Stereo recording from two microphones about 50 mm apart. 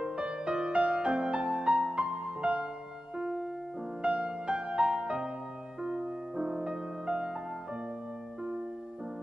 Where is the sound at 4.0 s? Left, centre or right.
Centre.